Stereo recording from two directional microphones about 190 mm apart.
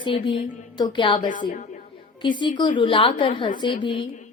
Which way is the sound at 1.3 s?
45° left (ahead or behind).